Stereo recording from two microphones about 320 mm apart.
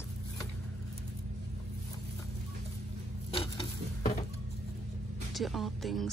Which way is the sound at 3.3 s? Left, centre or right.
Centre.